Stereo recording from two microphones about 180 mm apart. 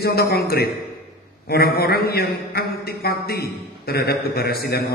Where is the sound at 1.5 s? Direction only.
60° left (ahead or behind).